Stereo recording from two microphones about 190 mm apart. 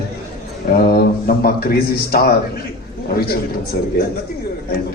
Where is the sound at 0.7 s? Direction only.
55° left (ahead or behind).